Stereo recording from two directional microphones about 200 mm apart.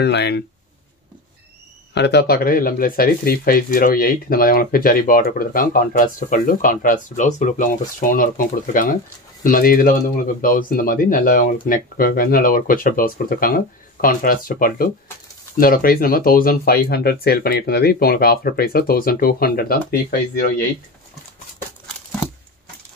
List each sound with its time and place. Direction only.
0.0 s speech: 55° left (ahead or behind)
2.0 s speech: 55° left (ahead or behind)